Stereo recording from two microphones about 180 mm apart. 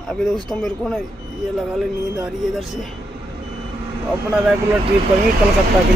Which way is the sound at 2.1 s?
Centre (ahead or behind).